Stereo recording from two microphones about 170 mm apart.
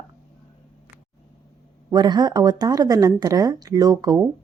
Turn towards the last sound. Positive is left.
turn(degrees=-20)  # may be behind; listen again after turning